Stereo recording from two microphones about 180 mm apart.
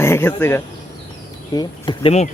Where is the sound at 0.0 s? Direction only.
15° left (ahead or behind).